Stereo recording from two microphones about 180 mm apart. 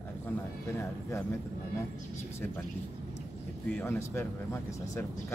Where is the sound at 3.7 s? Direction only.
10° left (ahead or behind).